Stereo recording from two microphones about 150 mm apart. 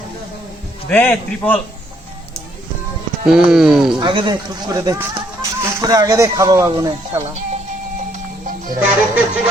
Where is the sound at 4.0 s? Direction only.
35° right (ahead or behind).